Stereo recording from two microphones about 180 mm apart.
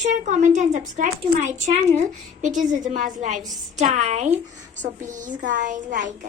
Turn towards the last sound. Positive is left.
turn(degrees=-45)  # may be behind; listen again after turning